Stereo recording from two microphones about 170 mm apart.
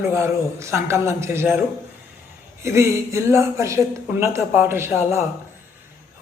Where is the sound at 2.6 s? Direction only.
15° right (ahead or behind).